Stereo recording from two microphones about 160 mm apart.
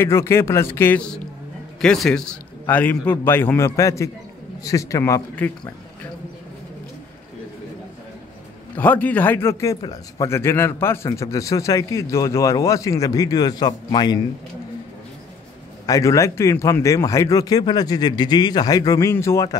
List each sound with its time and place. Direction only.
0.0 s a man's voice: 15° left (ahead or behind)
8.7 s a man's voice: 10° left (ahead or behind)
15.9 s a man's voice: 20° left (ahead or behind)